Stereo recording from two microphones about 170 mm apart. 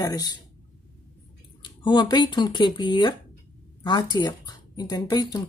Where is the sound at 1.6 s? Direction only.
25° left (ahead or behind).